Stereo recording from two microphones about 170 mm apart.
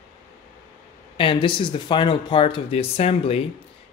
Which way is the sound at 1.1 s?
30° left (ahead or behind).